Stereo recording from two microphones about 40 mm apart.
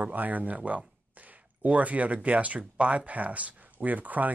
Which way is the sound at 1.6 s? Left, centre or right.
Right.